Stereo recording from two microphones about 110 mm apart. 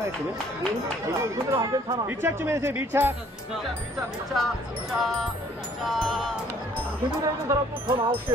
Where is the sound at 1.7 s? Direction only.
35° right (ahead or behind).